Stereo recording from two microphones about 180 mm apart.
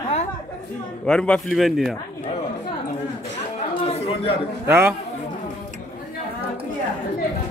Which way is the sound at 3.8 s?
35° left (ahead or behind).